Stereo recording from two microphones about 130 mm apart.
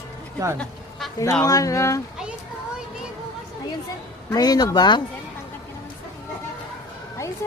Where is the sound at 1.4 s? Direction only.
25° left (ahead or behind).